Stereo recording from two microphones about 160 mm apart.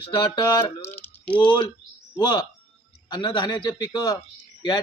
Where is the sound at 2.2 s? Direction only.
25° left (ahead or behind).